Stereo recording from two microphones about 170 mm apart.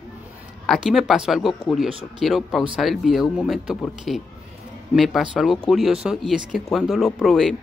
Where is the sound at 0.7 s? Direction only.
Centre (ahead or behind).